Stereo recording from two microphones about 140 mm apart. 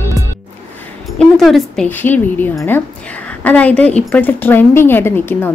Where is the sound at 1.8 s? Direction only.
15° left (ahead or behind).